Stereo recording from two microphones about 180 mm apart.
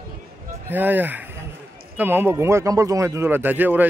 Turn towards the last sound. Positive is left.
turn(degrees=-10)  # may be behind; listen again after turning